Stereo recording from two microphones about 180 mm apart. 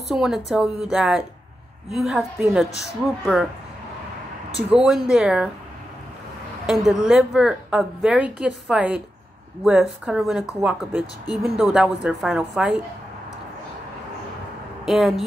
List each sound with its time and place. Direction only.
0.1 s a woman's voice: centre (ahead or behind)
4.6 s a woman's voice: 5° right (ahead or behind)
6.6 s a woman's voice: centre (ahead or behind)
14.9 s a woman's voice: centre (ahead or behind)